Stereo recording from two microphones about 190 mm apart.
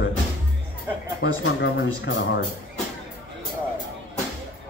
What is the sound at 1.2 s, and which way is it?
Speech, 75° left (ahead or behind).